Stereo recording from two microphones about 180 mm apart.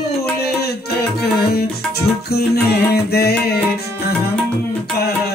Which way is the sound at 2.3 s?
60° left (ahead or behind).